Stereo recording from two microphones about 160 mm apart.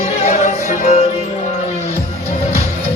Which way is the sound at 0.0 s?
40° left (ahead or behind).